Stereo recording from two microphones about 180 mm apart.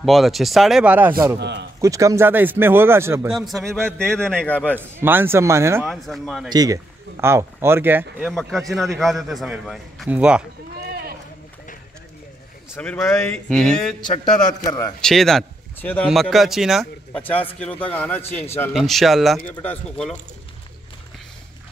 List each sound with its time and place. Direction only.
0.0 s a man's voice: centre (ahead or behind)
1.4 s speech: 70° right (ahead or behind)
1.8 s speech: 20° right (ahead or behind)
3.3 s a man's voice: centre (ahead or behind)
4.7 s speech: 10° right (ahead or behind)
5.9 s a man's voice: centre (ahead or behind)
6.5 s speech: 20° right (ahead or behind)
8.3 s a man's voice: centre (ahead or behind)
12.7 s a man's voice: 10° left (ahead or behind)
14.0 s a man's voice: 35° left (ahead or behind)
15.0 s a man's voice: centre (ahead or behind)
17.2 s a man's voice: 10° left (ahead or behind)